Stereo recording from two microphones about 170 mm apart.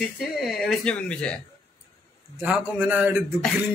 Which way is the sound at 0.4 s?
Centre (ahead or behind).